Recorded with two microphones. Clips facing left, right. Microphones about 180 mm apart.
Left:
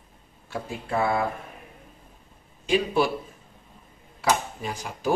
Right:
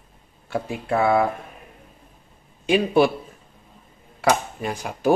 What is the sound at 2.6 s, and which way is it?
Speech, 60° right (ahead or behind).